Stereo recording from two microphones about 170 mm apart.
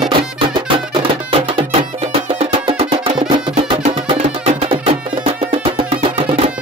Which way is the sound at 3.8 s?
40° right (ahead or behind).